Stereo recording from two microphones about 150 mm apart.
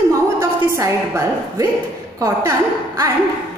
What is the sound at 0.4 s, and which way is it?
A woman's voice, 20° right (ahead or behind).